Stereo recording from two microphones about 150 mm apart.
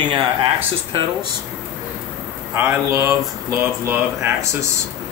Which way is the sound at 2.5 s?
15° right (ahead or behind).